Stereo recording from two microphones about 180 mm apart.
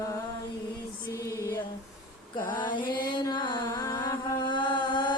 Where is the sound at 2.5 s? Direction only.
25° left (ahead or behind).